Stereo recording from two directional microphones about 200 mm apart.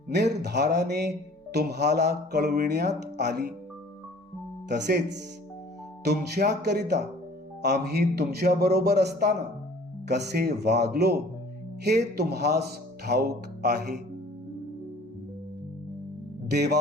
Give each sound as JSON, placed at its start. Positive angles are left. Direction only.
{"t": 0.4, "sound": "speech", "side_deg": -55}
{"t": 4.7, "sound": "speech", "side_deg": -60}
{"t": 16.5, "sound": "speech", "side_deg": -55}